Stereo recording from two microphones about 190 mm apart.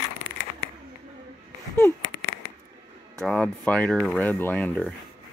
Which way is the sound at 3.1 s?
5° left (ahead or behind).